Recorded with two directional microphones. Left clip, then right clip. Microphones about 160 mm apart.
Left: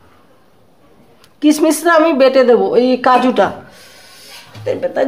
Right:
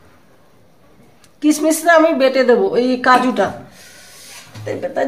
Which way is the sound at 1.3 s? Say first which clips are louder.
Left 3 dB; 45° left (ahead or behind).